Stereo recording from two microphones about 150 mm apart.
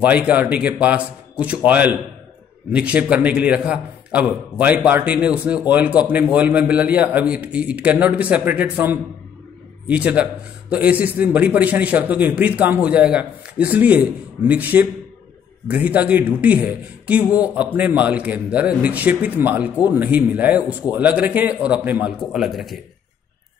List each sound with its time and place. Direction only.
0.0 s a man's voice: 10° right (ahead or behind)